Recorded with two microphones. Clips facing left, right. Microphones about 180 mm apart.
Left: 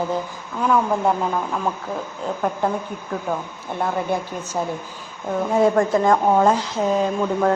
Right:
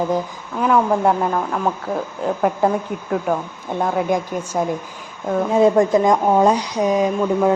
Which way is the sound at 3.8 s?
10° right (ahead or behind).